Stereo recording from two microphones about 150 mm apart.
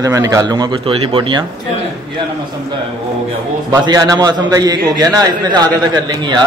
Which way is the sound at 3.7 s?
25° right (ahead or behind).